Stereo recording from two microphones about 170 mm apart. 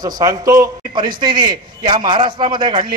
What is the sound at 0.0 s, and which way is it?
A man's voice, 20° right (ahead or behind).